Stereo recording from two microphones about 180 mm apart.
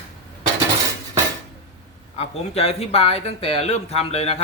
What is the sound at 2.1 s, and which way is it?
Speech, 35° left (ahead or behind).